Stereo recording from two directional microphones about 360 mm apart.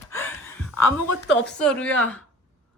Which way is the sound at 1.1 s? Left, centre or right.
Left.